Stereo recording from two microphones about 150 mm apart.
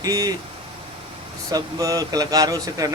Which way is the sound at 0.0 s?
25° right (ahead or behind).